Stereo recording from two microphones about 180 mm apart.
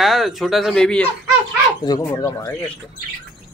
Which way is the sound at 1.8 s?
20° left (ahead or behind).